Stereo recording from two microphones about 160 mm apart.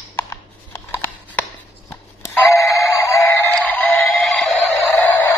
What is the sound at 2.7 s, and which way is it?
Synthetic singing, 20° left (ahead or behind).